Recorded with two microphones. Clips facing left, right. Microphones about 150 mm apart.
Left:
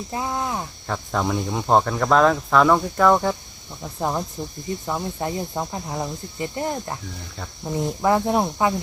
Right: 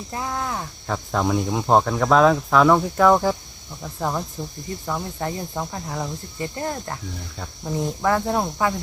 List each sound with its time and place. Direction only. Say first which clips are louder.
0.1 s speech: left 1 dB; 20° left (ahead or behind)
0.9 s speech: right 2 dB; centre (ahead or behind)
4.4 s speech: left 2 dB; 15° left (ahead or behind)